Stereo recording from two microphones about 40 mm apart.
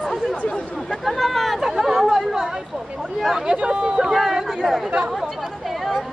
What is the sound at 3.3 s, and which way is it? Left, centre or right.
Speech, centre.